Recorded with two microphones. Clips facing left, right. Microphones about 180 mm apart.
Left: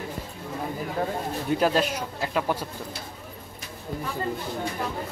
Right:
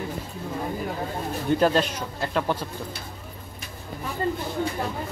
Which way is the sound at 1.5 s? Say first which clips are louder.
Right 2 dB; 5° left (ahead or behind).